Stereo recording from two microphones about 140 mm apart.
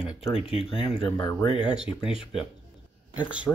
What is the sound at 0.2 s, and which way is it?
Speech, 40° left (ahead or behind).